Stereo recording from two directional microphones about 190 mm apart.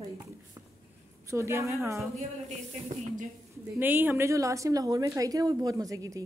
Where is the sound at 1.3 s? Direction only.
15° right (ahead or behind).